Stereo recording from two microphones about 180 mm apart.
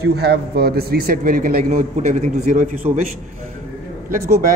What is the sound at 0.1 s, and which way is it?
A man's voice, 65° right (ahead or behind).